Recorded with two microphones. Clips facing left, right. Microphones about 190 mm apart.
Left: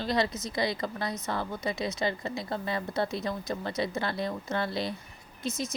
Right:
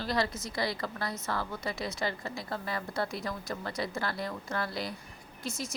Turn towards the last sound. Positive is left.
turn(degrees=20)  # may be behind; listen again after turning